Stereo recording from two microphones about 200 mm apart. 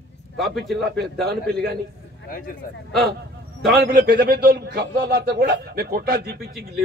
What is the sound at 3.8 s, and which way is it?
A man's voice, 55° right (ahead or behind).